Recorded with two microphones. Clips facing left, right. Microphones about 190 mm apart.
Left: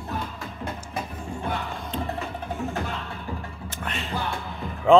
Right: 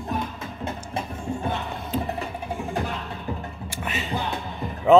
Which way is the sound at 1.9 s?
5° right (ahead or behind).